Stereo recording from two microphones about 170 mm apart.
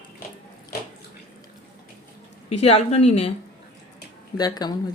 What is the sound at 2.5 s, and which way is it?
Speech, 35° left (ahead or behind).